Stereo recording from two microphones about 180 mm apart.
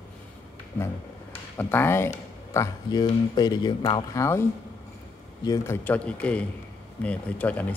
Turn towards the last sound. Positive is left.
turn(degrees=10)  # may be behind; listen again after turning